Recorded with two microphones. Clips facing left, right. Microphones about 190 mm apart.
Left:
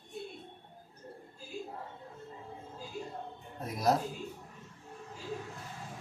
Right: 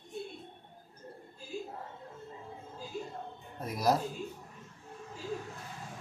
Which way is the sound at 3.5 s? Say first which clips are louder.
Even; 5° right (ahead or behind).